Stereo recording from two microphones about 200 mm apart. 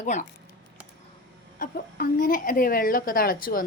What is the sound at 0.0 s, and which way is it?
Speech, 40° left (ahead or behind).